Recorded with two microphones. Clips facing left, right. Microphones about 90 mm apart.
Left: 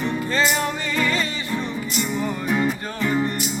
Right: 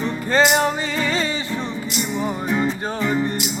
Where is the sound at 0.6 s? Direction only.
25° right (ahead or behind).